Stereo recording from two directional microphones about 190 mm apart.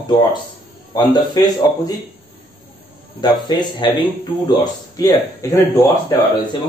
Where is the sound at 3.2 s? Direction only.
20° left (ahead or behind).